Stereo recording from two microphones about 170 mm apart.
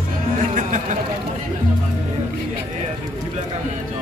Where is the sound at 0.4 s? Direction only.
45° right (ahead or behind).